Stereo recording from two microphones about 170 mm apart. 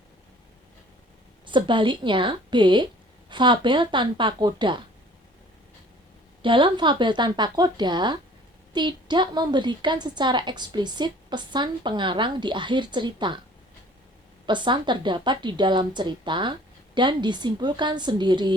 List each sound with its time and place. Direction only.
1.5 s a woman's voice: 30° right (ahead or behind)
6.4 s a woman's voice: 30° right (ahead or behind)
14.4 s a woman's voice: 25° right (ahead or behind)